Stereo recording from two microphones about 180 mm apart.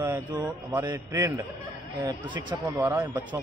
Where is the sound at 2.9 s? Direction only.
10° right (ahead or behind).